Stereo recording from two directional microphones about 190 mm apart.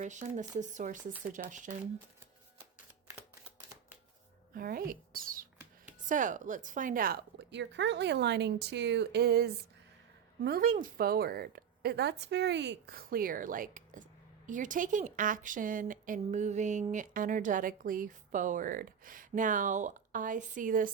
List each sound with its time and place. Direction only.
0.0 s a woman's voice: 40° right (ahead or behind)
4.5 s a woman's voice: 50° right (ahead or behind)